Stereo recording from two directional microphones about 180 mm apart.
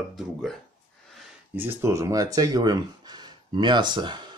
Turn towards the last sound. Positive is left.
turn(degrees=-25)  # may be behind; listen again after turning